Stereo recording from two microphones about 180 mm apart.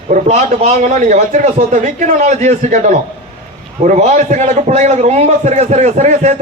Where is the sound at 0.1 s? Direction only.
40° right (ahead or behind).